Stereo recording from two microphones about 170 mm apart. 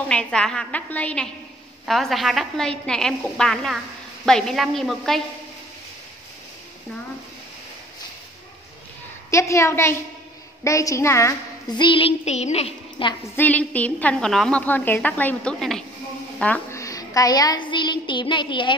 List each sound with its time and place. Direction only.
0.1 s a woman's voice: 5° left (ahead or behind)
9.3 s a woman's voice: 15° left (ahead or behind); by 13.1 s 35° left (ahead or behind)
13.4 s a woman's voice: 10° left (ahead or behind); by 18.8 s 30° left (ahead or behind)